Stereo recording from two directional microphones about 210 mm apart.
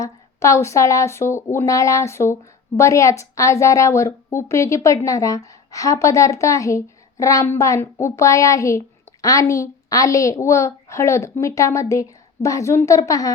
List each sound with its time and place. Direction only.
0.0 s speech: 15° left (ahead or behind)